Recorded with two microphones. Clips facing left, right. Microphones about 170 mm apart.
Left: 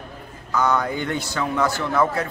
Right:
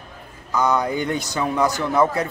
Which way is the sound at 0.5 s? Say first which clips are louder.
Right 1 dB; 15° right (ahead or behind).